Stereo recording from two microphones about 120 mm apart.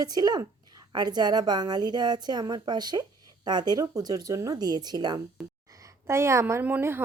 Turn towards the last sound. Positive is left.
turn(degrees=-20)  # may be behind; listen again after turning